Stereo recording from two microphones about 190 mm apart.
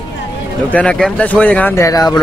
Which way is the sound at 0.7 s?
5° left (ahead or behind).